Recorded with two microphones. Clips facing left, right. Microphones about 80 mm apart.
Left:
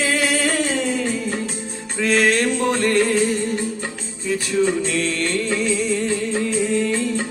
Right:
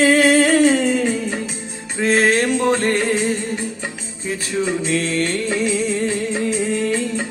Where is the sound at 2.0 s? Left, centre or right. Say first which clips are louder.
Right 2 dB; right.